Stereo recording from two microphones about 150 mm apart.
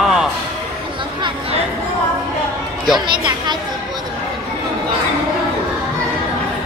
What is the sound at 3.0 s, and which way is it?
Speech, 30° right (ahead or behind).